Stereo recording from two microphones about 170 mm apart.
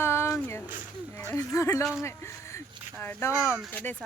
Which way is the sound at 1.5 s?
15° left (ahead or behind).